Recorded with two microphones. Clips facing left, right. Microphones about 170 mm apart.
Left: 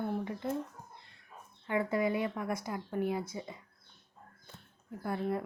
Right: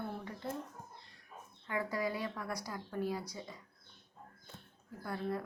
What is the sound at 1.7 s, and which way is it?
Speech, 25° left (ahead or behind).